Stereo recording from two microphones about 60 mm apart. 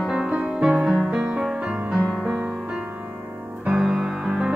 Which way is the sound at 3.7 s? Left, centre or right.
Centre.